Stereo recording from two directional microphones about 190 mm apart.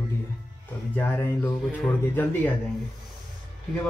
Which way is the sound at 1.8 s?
10° left (ahead or behind).